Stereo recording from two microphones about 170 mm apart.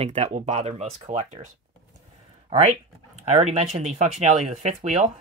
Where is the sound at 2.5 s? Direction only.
40° right (ahead or behind).